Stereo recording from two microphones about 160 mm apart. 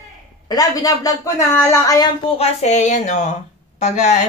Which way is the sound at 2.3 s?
40° left (ahead or behind).